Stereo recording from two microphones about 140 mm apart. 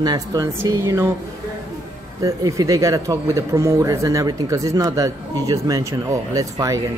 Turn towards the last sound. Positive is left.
turn(degrees=-25)  # may be behind; listen again after turning